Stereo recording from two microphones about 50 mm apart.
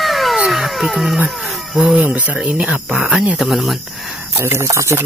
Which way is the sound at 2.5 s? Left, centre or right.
Right.